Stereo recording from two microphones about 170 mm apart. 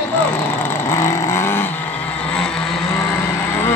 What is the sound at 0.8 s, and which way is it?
Vehicle, 20° left (ahead or behind).